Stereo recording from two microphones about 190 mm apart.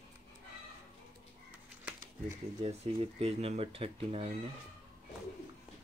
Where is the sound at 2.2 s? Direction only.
35° right (ahead or behind).